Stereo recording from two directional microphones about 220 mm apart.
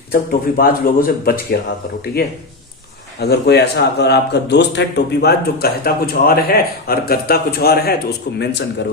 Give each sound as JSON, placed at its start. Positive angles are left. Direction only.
{"t": 0.1, "sound": "a man's voice", "side_deg": 40}
{"t": 3.2, "sound": "a man's voice", "side_deg": 45}